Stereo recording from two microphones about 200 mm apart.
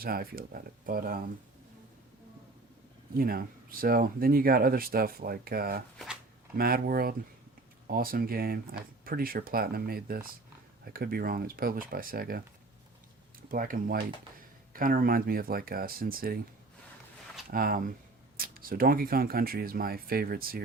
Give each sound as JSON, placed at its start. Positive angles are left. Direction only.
{"t": 0.0, "sound": "speech", "side_deg": -50}
{"t": 3.2, "sound": "speech", "side_deg": -45}
{"t": 13.5, "sound": "speech", "side_deg": -45}
{"t": 17.5, "sound": "speech", "side_deg": -45}